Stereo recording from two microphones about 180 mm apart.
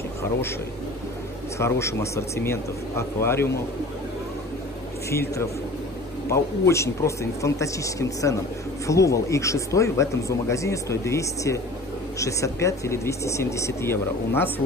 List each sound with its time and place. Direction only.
1.6 s speech: 15° left (ahead or behind)
5.1 s speech: 15° left (ahead or behind)